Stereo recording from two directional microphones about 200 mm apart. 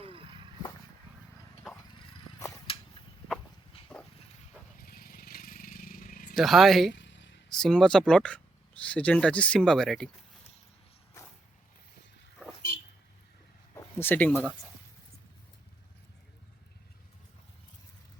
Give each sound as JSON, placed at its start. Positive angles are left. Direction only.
{"t": 0.0, "sound": "vehicle", "side_deg": -25}
{"t": 2.7, "sound": "a sound", "side_deg": 30}
{"t": 4.8, "sound": "vehicle", "side_deg": 50}
{"t": 6.3, "sound": "speech", "side_deg": 0}
{"t": 6.9, "sound": "a sound", "side_deg": 65}
{"t": 7.5, "sound": "speech", "side_deg": 5}
{"t": 13.7, "sound": "speech", "side_deg": 10}